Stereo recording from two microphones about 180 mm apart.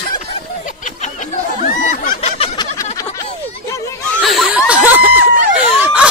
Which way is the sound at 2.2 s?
35° left (ahead or behind).